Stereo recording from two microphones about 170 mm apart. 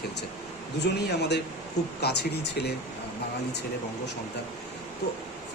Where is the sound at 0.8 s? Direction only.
75° left (ahead or behind).